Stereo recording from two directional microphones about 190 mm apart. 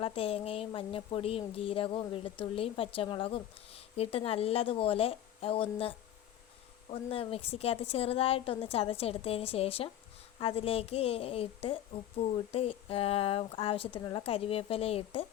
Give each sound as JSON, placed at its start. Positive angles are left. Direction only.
{"t": 0.0, "sound": "speech", "side_deg": 30}
{"t": 6.9, "sound": "a woman's voice", "side_deg": 30}